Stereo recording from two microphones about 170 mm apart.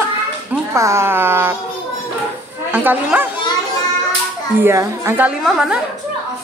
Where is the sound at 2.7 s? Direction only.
10° right (ahead or behind).